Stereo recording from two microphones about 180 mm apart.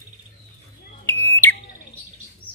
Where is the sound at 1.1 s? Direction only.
15° left (ahead or behind).